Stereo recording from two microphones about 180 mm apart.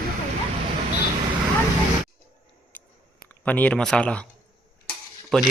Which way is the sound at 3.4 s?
10° left (ahead or behind).